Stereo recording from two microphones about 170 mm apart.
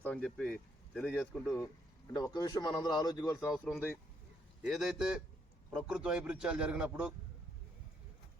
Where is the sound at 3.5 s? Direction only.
5° left (ahead or behind).